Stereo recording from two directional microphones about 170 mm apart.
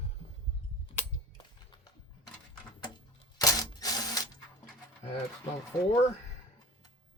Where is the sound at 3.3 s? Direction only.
20° left (ahead or behind).